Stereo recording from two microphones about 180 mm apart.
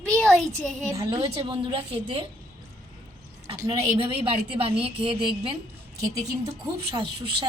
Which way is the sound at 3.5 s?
20° right (ahead or behind).